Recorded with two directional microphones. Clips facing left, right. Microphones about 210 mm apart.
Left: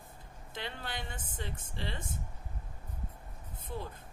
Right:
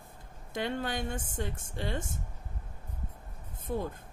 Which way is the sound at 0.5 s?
45° right (ahead or behind).